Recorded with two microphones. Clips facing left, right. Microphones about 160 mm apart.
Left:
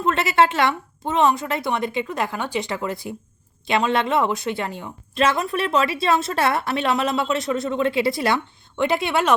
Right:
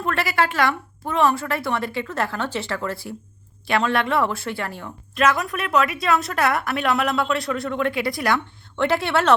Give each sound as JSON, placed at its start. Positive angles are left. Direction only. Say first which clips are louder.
{"t": 0.0, "sound": "a woman's voice", "louder": "left 4 dB", "side_deg": 20}